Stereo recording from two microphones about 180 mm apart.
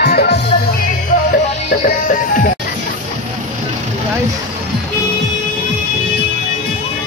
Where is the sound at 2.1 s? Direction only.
50° left (ahead or behind).